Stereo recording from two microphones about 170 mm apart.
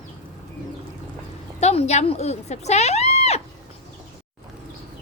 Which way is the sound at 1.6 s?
40° left (ahead or behind).